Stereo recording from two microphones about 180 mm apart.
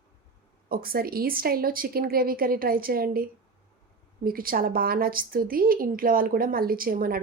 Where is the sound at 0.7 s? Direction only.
55° right (ahead or behind).